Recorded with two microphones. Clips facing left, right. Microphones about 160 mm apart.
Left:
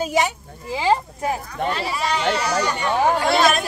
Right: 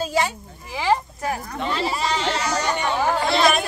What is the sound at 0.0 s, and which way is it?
Speech, 15° left (ahead or behind).